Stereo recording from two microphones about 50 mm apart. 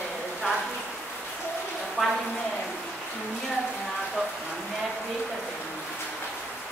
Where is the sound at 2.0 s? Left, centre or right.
Centre.